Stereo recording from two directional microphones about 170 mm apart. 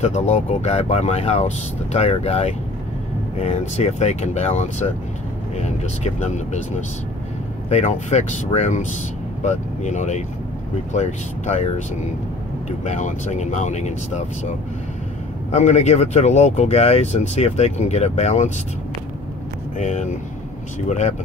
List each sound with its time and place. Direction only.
0.0 s speech: 40° left (ahead or behind)
7.7 s speech: 40° left (ahead or behind)
15.5 s speech: 40° left (ahead or behind)
19.8 s speech: 45° left (ahead or behind)